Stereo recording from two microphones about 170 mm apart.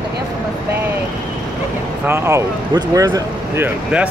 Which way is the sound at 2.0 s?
15° right (ahead or behind).